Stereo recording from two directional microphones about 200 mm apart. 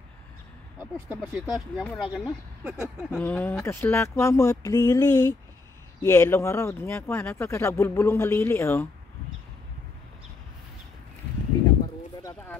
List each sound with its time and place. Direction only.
1.3 s speech: 5° right (ahead or behind)
3.2 s speech: 10° left (ahead or behind)
12.2 s a sound: 20° left (ahead or behind)